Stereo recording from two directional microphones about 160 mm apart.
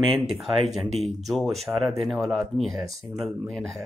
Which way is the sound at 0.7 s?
Centre (ahead or behind).